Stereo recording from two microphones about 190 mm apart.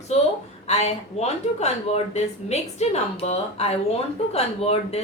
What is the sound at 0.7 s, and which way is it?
Speech, 35° left (ahead or behind).